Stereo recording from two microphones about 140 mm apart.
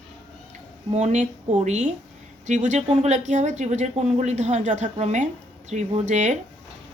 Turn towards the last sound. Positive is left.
turn(degrees=-55)  # may be behind; listen again after turning